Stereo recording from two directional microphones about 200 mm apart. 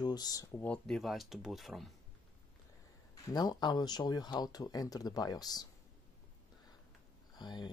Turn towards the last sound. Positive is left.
turn(degrees=20)  # may be behind; listen again after turning